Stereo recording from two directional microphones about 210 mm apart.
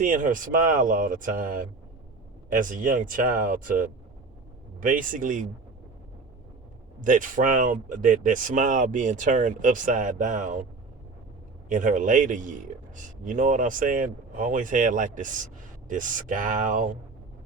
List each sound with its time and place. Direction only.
0.0 s speech: 40° right (ahead or behind)
7.0 s speech: 40° right (ahead or behind)
11.7 s speech: 40° right (ahead or behind)